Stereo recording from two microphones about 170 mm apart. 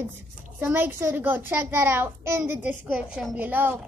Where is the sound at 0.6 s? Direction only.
10° right (ahead or behind).